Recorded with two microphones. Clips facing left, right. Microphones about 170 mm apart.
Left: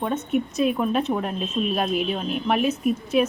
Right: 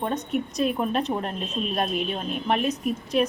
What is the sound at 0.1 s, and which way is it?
A woman's voice, centre (ahead or behind).